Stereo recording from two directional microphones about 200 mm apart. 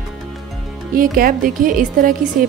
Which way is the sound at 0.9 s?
45° right (ahead or behind).